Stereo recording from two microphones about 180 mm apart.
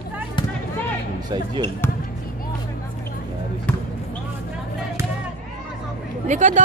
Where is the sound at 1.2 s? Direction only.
25° right (ahead or behind).